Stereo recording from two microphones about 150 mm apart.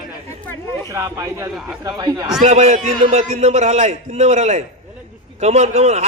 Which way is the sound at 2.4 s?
50° right (ahead or behind).